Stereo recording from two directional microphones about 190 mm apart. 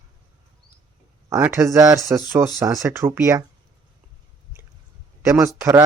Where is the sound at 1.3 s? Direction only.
15° right (ahead or behind).